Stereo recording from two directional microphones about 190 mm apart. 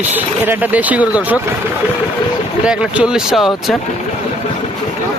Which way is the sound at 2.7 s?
5° right (ahead or behind).